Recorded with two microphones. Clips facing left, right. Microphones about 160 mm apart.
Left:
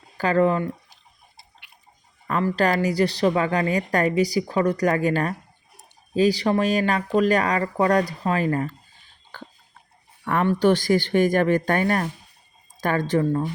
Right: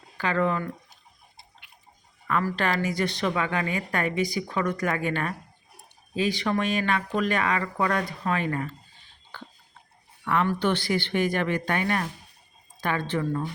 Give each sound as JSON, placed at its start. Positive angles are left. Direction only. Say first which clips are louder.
{"t": 0.2, "sound": "a woman's voice", "louder": "left 6 dB", "side_deg": 40}
{"t": 2.2, "sound": "a woman's voice", "louder": "left 5 dB", "side_deg": 30}
{"t": 10.6, "sound": "a woman's voice", "louder": "left 7 dB", "side_deg": 40}